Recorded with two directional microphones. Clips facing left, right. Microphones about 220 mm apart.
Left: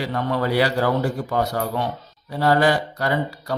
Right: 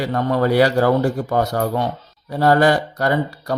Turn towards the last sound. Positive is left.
turn(degrees=-45)  # may be behind; listen again after turning